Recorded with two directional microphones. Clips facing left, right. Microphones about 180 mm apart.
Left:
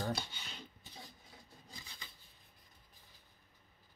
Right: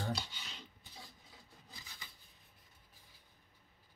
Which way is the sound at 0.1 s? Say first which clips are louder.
Left 1 dB; 55° left (ahead or behind).